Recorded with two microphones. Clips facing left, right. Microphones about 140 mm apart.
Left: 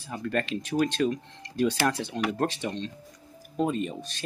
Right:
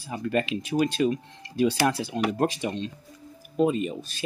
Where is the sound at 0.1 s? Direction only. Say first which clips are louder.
Right 3 dB; 10° right (ahead or behind).